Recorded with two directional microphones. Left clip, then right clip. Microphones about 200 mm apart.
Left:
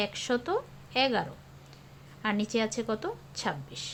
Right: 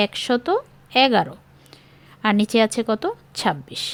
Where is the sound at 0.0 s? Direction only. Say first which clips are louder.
Right 9 dB; 45° right (ahead or behind).